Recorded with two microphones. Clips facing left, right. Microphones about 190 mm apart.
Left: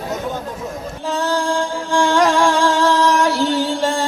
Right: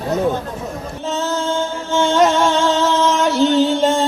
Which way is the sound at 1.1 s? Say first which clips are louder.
Left 1 dB; 20° right (ahead or behind).